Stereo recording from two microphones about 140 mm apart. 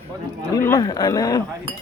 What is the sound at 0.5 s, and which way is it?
Speech, 20° left (ahead or behind).